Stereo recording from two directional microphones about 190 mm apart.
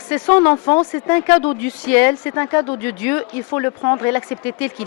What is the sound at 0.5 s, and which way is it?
A woman's voice, 20° left (ahead or behind).